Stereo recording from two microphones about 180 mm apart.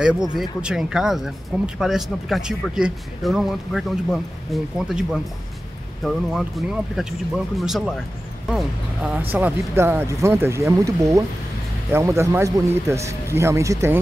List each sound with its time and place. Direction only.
0.0 s a man's voice: 5° right (ahead or behind)